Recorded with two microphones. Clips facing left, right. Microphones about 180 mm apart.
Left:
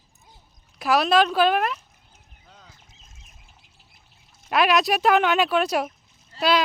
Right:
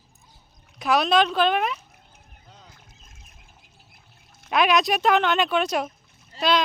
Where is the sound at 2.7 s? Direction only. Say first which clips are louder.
Right 2 dB; 55° right (ahead or behind).